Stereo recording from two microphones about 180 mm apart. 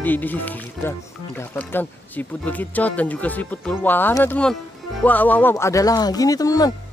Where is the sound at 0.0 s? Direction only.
10° left (ahead or behind).